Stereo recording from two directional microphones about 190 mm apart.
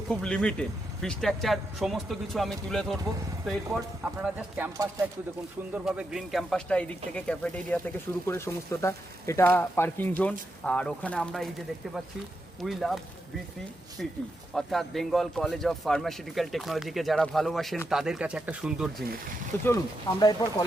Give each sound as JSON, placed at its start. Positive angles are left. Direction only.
{"t": 0.1, "sound": "speech", "side_deg": 5}
{"t": 12.6, "sound": "speech", "side_deg": 0}
{"t": 14.0, "sound": "speech", "side_deg": 5}
{"t": 19.6, "sound": "speech", "side_deg": 20}